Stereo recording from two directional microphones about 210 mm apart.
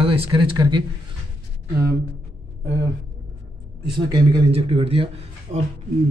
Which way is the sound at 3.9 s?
25° right (ahead or behind).